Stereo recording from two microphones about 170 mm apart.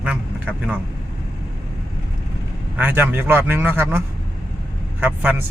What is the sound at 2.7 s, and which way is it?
A man's voice, 10° right (ahead or behind).